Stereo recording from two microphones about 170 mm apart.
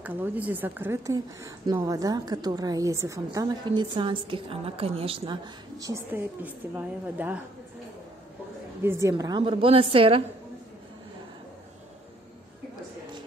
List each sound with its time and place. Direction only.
0.0 s speech: 10° right (ahead or behind)
8.8 s a woman's voice: 15° right (ahead or behind)
9.1 s a woman's voice: 30° right (ahead or behind)